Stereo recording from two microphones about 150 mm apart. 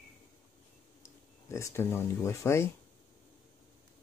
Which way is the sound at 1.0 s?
20° left (ahead or behind).